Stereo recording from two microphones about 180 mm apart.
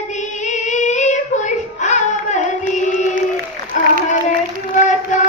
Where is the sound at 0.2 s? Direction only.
40° left (ahead or behind).